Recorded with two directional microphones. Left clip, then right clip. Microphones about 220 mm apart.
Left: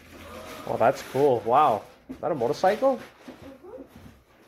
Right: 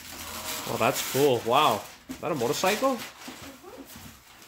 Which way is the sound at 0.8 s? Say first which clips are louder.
Left 2 dB; 35° right (ahead or behind).